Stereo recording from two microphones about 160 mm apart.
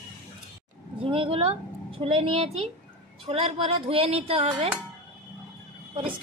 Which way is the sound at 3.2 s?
35° right (ahead or behind).